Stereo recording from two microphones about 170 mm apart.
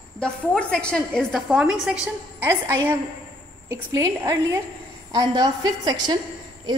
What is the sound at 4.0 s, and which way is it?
A woman's voice, 20° right (ahead or behind).